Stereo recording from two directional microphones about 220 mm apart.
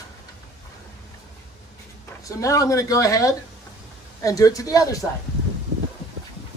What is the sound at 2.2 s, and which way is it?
Speech, 15° left (ahead or behind).